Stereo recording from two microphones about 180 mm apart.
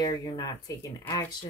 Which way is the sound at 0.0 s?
20° left (ahead or behind).